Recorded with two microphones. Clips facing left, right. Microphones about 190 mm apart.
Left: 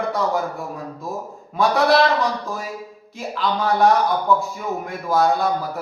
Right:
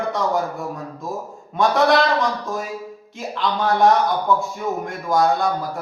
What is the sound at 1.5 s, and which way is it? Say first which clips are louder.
Speech: even; centre (ahead or behind).